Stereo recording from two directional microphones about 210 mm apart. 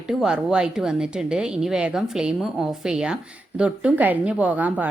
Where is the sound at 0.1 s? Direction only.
5° right (ahead or behind).